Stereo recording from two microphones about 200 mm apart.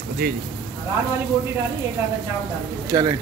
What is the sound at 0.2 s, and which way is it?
Speech, 45° right (ahead or behind).